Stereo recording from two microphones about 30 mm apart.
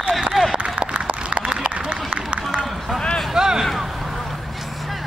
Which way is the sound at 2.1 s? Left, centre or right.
Right.